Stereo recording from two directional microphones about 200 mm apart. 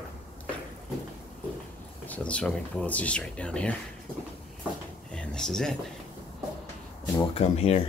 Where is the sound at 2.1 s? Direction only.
5° left (ahead or behind).